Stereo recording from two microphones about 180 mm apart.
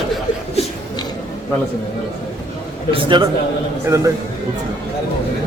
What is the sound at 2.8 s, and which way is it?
Speech, 30° right (ahead or behind).